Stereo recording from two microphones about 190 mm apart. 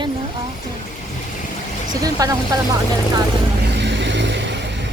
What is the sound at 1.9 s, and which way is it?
Speech, 20° right (ahead or behind).